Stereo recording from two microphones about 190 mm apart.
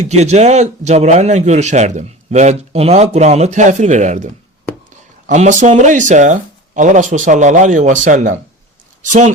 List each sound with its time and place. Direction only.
0.0 s a man's voice: 35° right (ahead or behind)